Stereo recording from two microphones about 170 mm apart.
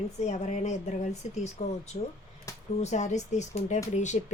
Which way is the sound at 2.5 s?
20° left (ahead or behind).